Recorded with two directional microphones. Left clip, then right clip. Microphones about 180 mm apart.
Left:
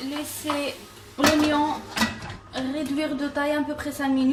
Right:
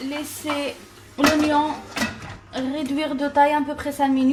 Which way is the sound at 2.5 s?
50° right (ahead or behind).